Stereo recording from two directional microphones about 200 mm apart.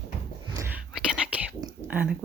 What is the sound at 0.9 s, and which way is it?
Whispering, 5° right (ahead or behind).